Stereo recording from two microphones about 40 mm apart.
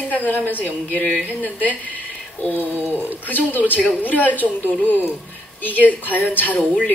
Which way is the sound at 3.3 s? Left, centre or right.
Left.